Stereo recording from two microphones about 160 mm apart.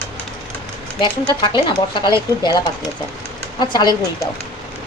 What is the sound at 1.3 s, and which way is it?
Speech, 30° left (ahead or behind).